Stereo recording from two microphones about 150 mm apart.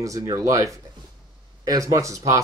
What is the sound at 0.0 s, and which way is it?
Speech, 20° right (ahead or behind).